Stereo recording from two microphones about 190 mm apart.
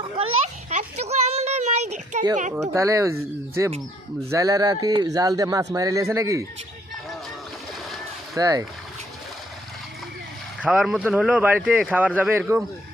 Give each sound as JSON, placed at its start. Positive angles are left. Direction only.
{"t": 0.7, "sound": "a sound", "side_deg": -35}
{"t": 2.6, "sound": "speech", "side_deg": -15}
{"t": 8.4, "sound": "speech", "side_deg": -20}
{"t": 10.6, "sound": "speech", "side_deg": 0}